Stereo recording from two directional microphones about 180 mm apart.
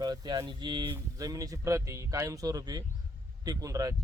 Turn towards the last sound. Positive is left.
turn(degrees=-20)  # may be behind; listen again after turning